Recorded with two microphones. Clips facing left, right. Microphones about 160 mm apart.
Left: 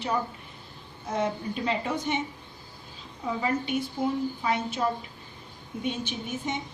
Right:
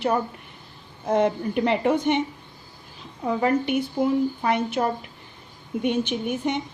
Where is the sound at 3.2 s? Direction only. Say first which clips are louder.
Right 6 dB; 60° right (ahead or behind).